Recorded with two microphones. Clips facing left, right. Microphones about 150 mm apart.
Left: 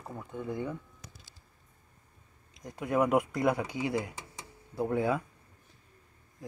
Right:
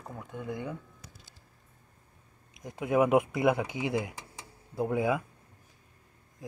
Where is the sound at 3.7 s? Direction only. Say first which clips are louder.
Right 1 dB; 15° right (ahead or behind).